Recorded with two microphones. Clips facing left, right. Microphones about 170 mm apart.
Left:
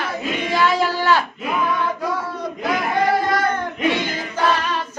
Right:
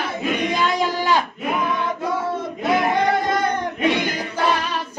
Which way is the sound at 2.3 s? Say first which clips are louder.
Right 2 dB; 25° right (ahead or behind).